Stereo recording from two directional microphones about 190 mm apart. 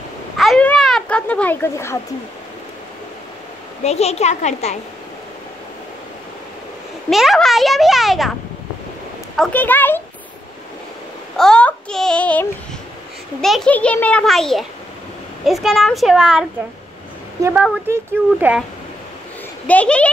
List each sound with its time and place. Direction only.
0.4 s a sound: 5° left (ahead or behind)
3.8 s a child's voice: 35° left (ahead or behind)
7.1 s a child's voice: centre (ahead or behind)
9.4 s a child's voice: 10° left (ahead or behind)
11.3 s child singing: 5° left (ahead or behind)
13.4 s a child's voice: centre (ahead or behind)
19.7 s a child's voice: 5° left (ahead or behind)